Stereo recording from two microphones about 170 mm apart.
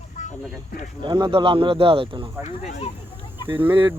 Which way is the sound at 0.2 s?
50° left (ahead or behind).